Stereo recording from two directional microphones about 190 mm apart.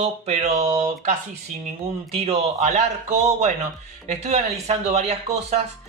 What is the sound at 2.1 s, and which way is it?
Speech, 30° right (ahead or behind).